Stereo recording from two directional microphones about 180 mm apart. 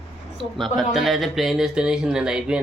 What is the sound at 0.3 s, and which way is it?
Speech, centre (ahead or behind).